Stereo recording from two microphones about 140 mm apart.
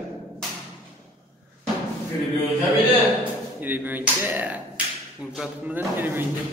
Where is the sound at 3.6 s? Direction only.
15° right (ahead or behind).